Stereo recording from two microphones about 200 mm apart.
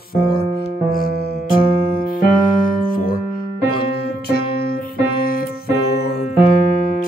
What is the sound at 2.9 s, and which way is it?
Music, 45° left (ahead or behind).